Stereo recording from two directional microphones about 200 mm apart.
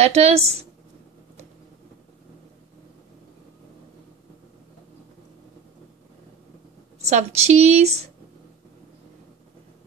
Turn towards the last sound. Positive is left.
turn(degrees=-35)  # may be behind; listen again after turning